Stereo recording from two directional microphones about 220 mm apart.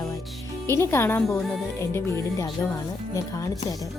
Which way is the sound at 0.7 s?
10° left (ahead or behind).